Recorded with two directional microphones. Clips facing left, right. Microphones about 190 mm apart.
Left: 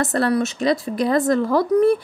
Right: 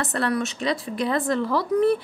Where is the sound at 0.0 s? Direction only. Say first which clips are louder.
Left 5 dB; 40° left (ahead or behind).